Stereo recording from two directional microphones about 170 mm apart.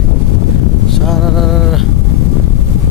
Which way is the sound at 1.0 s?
Centre (ahead or behind).